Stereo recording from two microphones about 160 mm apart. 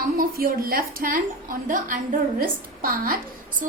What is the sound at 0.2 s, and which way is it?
A woman's voice, 65° right (ahead or behind).